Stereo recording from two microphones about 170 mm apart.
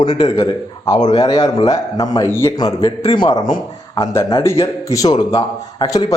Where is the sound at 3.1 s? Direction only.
25° left (ahead or behind).